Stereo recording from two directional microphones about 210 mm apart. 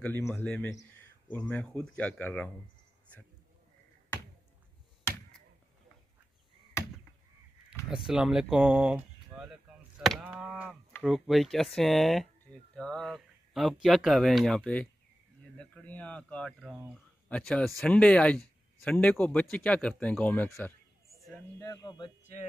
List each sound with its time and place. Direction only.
0.0 s speech: 10° left (ahead or behind)
7.9 s speech: 5° right (ahead or behind)
17.3 s speech: 5° left (ahead or behind); by 22.1 s 20° left (ahead or behind)